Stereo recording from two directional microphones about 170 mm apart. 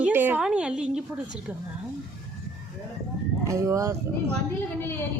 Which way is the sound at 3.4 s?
15° right (ahead or behind).